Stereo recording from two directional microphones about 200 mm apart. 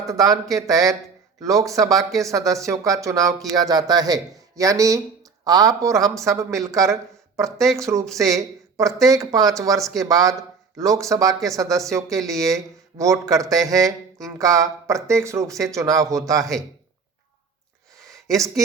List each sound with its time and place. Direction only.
0.1 s speech: 15° right (ahead or behind)
8.0 s speech: centre (ahead or behind)
8.8 s speech: 15° right (ahead or behind)
9.7 s speech: centre (ahead or behind)
10.0 s speech: 15° right (ahead or behind)
18.1 s a sound: 15° right (ahead or behind)